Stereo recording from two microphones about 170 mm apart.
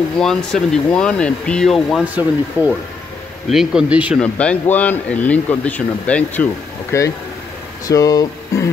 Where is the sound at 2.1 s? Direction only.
10° right (ahead or behind).